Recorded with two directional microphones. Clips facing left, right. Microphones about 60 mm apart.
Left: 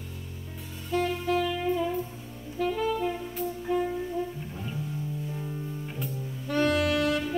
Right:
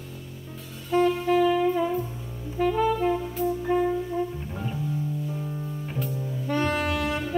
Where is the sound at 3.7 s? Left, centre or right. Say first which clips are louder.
Right 3 dB; right.